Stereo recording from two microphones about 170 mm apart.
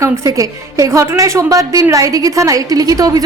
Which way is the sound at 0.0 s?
20° right (ahead or behind).